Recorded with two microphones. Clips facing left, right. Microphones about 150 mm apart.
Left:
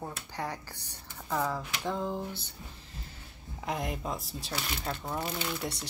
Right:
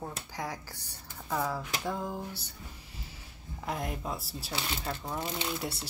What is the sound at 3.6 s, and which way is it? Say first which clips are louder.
Speech: left 1 dB; centre (ahead or behind).